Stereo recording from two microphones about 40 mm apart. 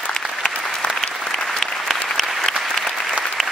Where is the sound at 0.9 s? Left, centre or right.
Centre.